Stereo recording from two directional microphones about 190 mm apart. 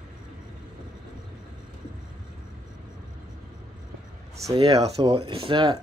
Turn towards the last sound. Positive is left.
turn(degrees=-25)  # may be behind; listen again after turning